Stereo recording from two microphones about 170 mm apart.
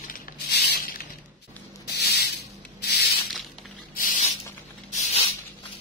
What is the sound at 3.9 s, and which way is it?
Spray, 50° left (ahead or behind).